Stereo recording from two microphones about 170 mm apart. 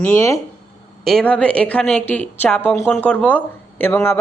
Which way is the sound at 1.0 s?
5° left (ahead or behind).